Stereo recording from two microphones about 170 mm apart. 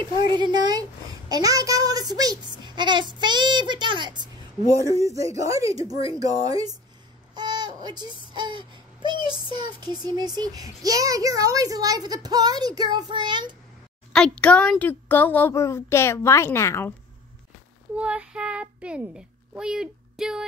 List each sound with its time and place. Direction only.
0.2 s speech: 25° right (ahead or behind)
14.1 s a child's voice: 5° left (ahead or behind)
17.9 s speech: 5° right (ahead or behind)